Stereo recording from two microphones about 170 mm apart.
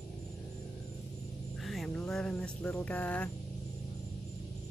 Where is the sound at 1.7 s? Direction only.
5° left (ahead or behind).